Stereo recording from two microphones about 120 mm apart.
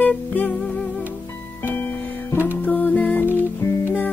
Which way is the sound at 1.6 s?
15° left (ahead or behind).